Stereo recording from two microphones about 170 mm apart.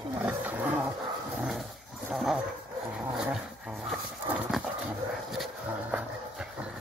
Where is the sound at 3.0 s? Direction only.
5° right (ahead or behind).